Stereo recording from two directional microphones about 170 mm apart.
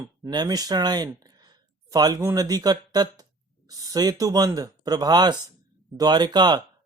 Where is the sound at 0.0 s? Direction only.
25° right (ahead or behind).